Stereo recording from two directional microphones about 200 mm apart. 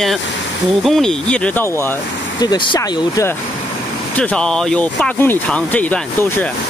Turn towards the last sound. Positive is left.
turn(degrees=10)  # may be behind; listen again after turning